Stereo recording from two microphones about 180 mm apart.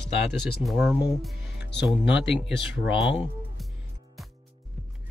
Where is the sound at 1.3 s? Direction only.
70° left (ahead or behind).